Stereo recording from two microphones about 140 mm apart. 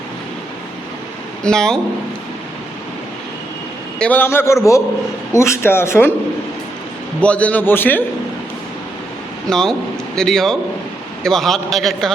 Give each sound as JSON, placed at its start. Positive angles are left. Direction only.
{"t": 1.5, "sound": "a man's voice", "side_deg": 5}
{"t": 3.9, "sound": "a man's voice", "side_deg": 10}
{"t": 7.2, "sound": "a man's voice", "side_deg": 10}
{"t": 9.5, "sound": "a man's voice", "side_deg": 5}